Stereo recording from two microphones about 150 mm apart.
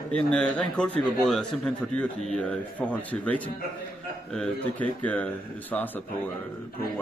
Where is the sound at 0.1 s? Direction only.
5° left (ahead or behind).